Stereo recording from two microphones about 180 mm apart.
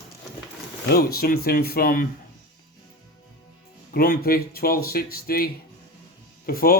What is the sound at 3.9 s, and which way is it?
Speech, 55° left (ahead or behind).